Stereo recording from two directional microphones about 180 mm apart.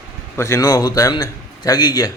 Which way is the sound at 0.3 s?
15° left (ahead or behind).